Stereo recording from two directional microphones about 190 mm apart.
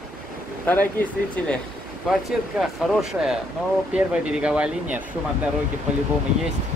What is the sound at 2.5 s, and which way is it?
Speech, 5° right (ahead or behind).